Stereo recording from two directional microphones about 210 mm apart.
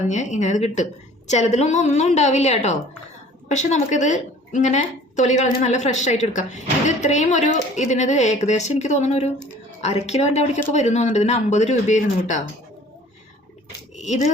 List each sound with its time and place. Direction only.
0.1 s a woman's voice: 35° left (ahead or behind)
13.9 s speech: 35° left (ahead or behind)